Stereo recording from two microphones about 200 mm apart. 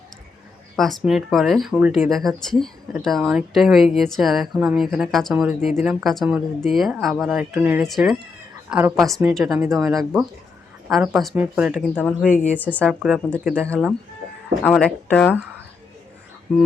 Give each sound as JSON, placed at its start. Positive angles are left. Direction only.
{"t": 0.8, "sound": "a woman's voice", "side_deg": 0}
{"t": 9.6, "sound": "speech", "side_deg": -15}
{"t": 10.8, "sound": "a woman's voice", "side_deg": -5}
{"t": 11.7, "sound": "a woman's voice", "side_deg": 5}